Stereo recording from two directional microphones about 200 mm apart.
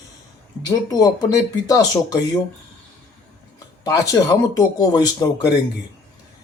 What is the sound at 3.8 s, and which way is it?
Speech, 15° left (ahead or behind).